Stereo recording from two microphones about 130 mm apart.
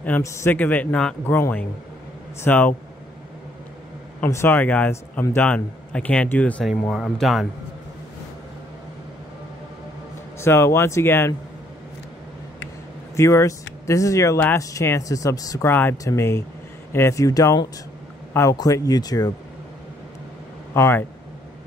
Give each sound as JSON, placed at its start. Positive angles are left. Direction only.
{"t": 0.2, "sound": "speech", "side_deg": 20}
{"t": 4.2, "sound": "speech", "side_deg": 20}
{"t": 6.9, "sound": "speech", "side_deg": 0}
{"t": 10.4, "sound": "speech", "side_deg": 20}
{"t": 13.1, "sound": "speech", "side_deg": 20}
{"t": 15.7, "sound": "speech", "side_deg": 15}
{"t": 20.7, "sound": "speech", "side_deg": 20}